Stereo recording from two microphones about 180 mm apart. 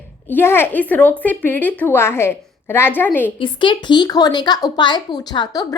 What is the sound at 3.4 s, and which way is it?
A woman's voice, 25° left (ahead or behind).